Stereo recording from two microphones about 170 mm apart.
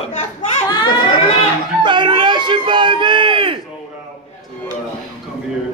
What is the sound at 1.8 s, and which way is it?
A man's voice, 30° right (ahead or behind).